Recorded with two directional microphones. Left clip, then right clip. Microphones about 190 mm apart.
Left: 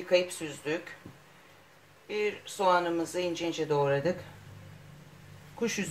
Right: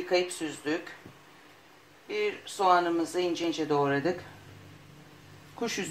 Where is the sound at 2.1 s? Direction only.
30° right (ahead or behind).